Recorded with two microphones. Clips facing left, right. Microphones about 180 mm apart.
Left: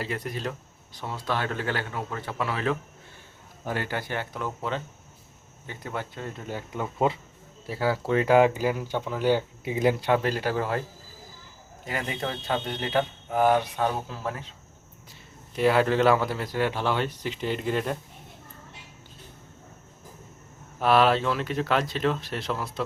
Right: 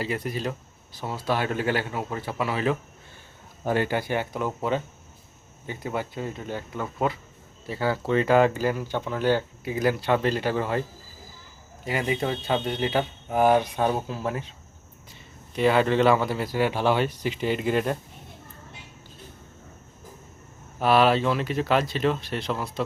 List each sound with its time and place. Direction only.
0.0 s speech: centre (ahead or behind)
3.7 s speech: 20° right (ahead or behind); by 6.5 s 5° right (ahead or behind)
6.5 s speech: 10° left (ahead or behind)
9.6 s speech: 20° left (ahead or behind)
10.1 s speech: 5° left (ahead or behind)
11.9 s speech: 5° right (ahead or behind)
13.3 s speech: 15° right (ahead or behind)
15.5 s speech: 5° left (ahead or behind)
20.7 s speech: centre (ahead or behind)